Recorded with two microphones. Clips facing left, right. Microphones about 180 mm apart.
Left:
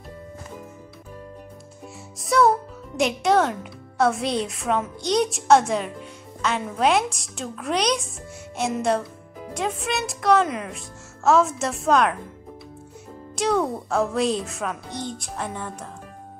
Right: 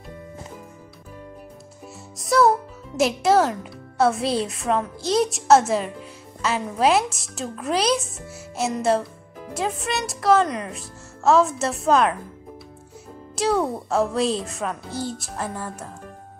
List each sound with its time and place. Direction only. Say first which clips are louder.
2.1 s a child's voice: right 1 dB; centre (ahead or behind)
13.4 s a woman's voice: right 1 dB; centre (ahead or behind)